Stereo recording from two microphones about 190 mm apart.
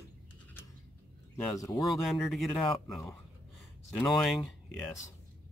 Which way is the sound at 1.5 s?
15° left (ahead or behind).